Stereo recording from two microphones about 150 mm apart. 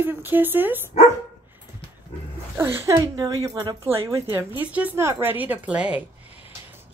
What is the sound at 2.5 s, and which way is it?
Speech, 15° right (ahead or behind).